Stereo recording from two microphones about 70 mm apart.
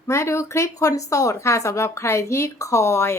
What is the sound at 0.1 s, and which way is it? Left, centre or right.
Speech, left.